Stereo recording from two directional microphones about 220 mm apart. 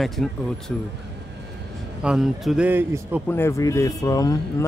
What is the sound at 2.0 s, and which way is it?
Speech, 5° right (ahead or behind).